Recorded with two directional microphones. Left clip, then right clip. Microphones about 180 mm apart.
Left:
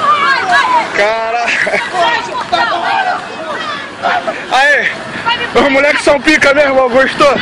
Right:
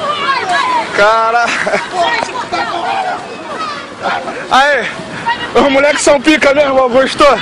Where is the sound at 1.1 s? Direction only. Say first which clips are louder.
Right 3 dB; 30° right (ahead or behind).